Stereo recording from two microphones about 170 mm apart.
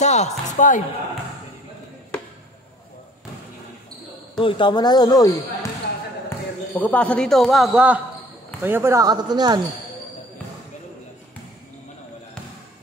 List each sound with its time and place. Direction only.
0.0 s speech: 45° left (ahead or behind)
4.4 s speech: 30° left (ahead or behind)
6.2 s speech: 10° left (ahead or behind); by 9.6 s 25° right (ahead or behind)